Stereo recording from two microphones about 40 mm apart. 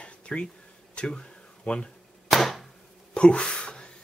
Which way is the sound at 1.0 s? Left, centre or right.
Left.